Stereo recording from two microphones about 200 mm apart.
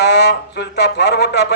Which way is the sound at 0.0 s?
60° left (ahead or behind).